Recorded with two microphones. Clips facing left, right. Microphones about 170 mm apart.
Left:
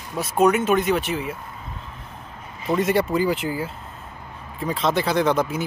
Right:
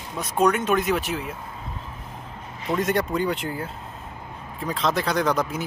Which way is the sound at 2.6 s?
Centre (ahead or behind).